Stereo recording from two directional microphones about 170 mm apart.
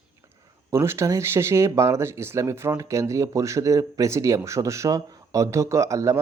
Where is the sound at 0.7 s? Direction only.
15° right (ahead or behind).